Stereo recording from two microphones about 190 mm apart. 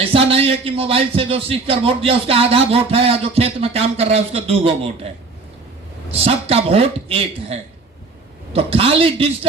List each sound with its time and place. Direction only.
0.0 s a man's voice: 30° right (ahead or behind)
6.1 s a man's voice: 30° right (ahead or behind)